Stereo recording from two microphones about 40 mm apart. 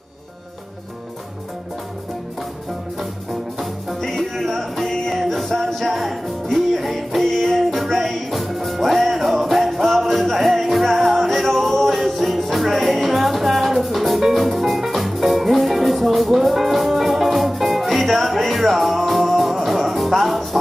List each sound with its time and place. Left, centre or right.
4.0 s music: centre